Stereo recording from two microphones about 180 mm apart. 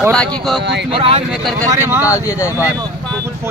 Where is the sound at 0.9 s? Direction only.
30° right (ahead or behind).